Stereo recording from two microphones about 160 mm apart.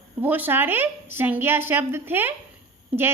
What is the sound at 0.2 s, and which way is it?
A woman's voice, 10° right (ahead or behind).